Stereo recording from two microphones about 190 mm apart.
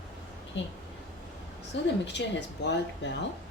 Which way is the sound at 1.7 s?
70° left (ahead or behind).